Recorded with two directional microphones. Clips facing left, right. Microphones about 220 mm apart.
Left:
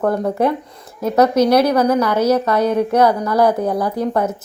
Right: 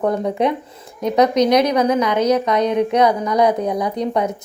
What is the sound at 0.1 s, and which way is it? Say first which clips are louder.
Speech: left 1 dB; 5° left (ahead or behind).